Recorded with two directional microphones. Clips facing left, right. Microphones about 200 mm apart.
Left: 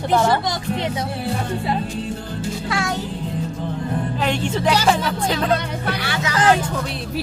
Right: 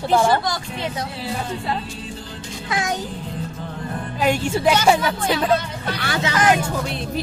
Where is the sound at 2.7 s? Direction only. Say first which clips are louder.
Right 1 dB; 20° right (ahead or behind).